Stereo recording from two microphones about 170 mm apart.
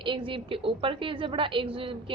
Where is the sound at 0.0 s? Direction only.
30° right (ahead or behind).